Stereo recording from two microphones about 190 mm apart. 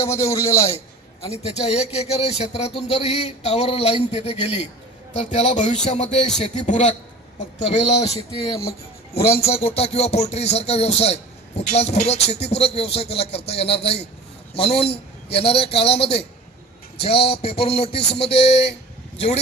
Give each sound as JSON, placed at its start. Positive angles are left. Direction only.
{"t": 0.0, "sound": "a man's voice", "side_deg": 15}
{"t": 1.2, "sound": "speech", "side_deg": 35}
{"t": 18.0, "sound": "speech", "side_deg": 60}